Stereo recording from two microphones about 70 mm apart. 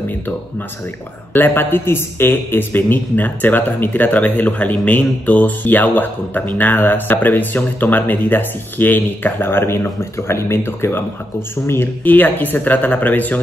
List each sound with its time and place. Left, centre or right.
1.3 s a man's voice: left